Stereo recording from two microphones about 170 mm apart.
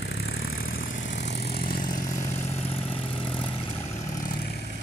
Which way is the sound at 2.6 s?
35° left (ahead or behind).